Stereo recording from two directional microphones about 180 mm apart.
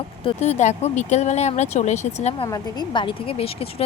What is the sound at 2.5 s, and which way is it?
Speech, 25° left (ahead or behind).